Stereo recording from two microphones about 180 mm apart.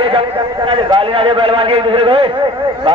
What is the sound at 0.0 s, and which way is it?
A man's voice, 30° right (ahead or behind).